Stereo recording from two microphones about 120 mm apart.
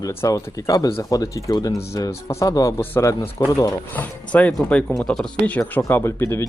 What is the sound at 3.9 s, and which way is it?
Speech, 15° left (ahead or behind).